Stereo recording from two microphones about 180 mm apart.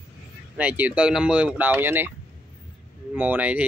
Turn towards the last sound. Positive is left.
turn(degrees=-10)  # may be behind; listen again after turning